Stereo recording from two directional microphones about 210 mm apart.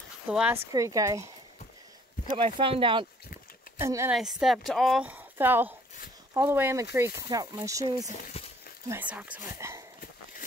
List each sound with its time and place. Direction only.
0.3 s speech: 5° right (ahead or behind)
0.7 s speech: 15° right (ahead or behind)
2.3 s speech: 25° right (ahead or behind)
3.8 s speech: 15° right (ahead or behind)
4.2 s speech: centre (ahead or behind)
8.1 s speech: 35° left (ahead or behind)
8.8 s speech: 10° right (ahead or behind)